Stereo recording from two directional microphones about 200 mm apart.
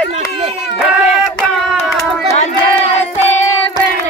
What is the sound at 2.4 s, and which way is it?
Crowd, 35° left (ahead or behind).